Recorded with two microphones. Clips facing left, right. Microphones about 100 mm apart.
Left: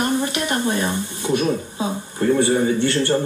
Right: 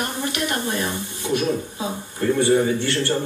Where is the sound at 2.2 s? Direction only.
25° left (ahead or behind).